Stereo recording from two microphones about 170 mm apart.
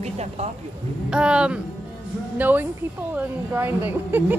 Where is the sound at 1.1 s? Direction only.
5° right (ahead or behind).